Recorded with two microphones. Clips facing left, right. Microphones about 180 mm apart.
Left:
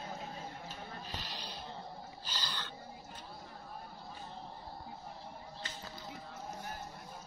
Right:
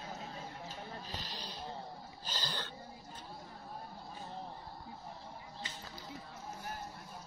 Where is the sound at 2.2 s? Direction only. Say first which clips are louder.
Right 3 dB; 45° right (ahead or behind).